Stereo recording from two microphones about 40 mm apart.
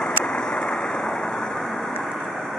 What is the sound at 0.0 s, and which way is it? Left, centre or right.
Vehicle, centre.